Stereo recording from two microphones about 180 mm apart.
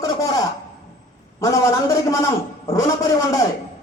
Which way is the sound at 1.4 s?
15° left (ahead or behind).